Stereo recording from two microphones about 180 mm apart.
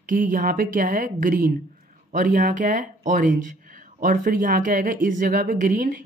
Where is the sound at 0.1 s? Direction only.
50° right (ahead or behind).